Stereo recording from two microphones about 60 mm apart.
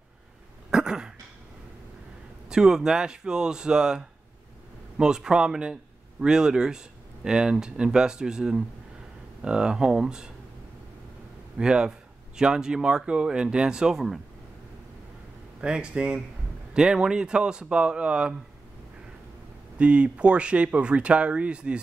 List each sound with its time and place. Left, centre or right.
0.7 s dog: centre
2.5 s speech: centre
11.5 s speech: centre
15.6 s speech: centre
19.8 s speech: centre